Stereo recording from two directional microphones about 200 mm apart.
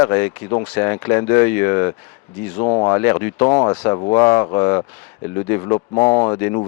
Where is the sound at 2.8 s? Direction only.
15° left (ahead or behind).